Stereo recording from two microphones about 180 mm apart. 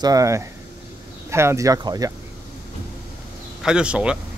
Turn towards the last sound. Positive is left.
turn(degrees=-5)  # may be behind; listen again after turning